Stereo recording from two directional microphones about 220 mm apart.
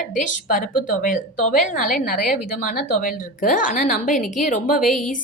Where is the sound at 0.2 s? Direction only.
35° left (ahead or behind).